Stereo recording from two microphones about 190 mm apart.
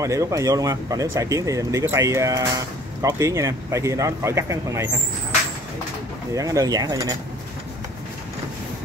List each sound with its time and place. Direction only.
0.0 s speech: 15° right (ahead or behind)
6.3 s speech: 20° right (ahead or behind)